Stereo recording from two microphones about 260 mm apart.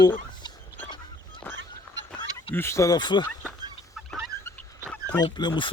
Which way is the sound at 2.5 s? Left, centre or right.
Centre.